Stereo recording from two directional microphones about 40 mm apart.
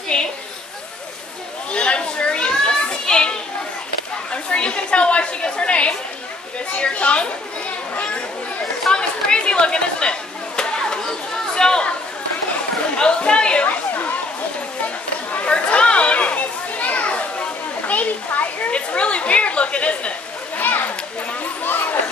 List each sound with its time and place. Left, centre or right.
0.1 s a woman's voice: left
1.7 s a sound: left
2.5 s children playing: left
4.3 s a woman's voice: left
8.9 s chatter: left
11.5 s speech: centre
13.0 s speech: left
13.7 s chatter: left
15.4 s children playing: left
17.8 s a child's voice: left
20.5 s children playing: left
21.6 s a sound: left